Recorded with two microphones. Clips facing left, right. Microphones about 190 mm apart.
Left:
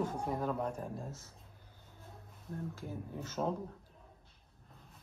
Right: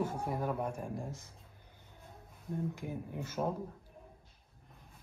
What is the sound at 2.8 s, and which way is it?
Speech, 15° right (ahead or behind).